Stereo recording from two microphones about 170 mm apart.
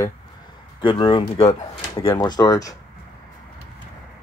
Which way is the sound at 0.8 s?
30° left (ahead or behind).